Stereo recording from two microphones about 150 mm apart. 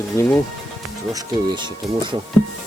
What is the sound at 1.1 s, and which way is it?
Speech, 30° right (ahead or behind).